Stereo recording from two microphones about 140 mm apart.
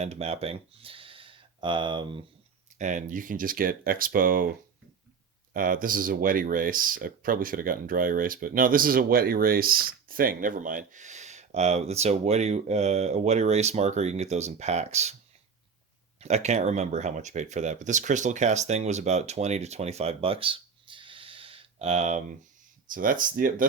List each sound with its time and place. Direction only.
0.0 s speech: 50° right (ahead or behind)
2.7 s speech: 65° right (ahead or behind); by 4.4 s 90° right
5.5 s speech: 80° right; by 15.1 s 50° right (ahead or behind)
16.2 s speech: 55° right (ahead or behind)
22.9 s speech: 75° right (ahead or behind)